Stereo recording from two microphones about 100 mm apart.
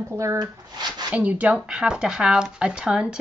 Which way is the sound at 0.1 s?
30° right (ahead or behind).